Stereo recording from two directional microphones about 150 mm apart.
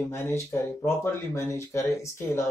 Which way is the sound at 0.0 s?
15° left (ahead or behind).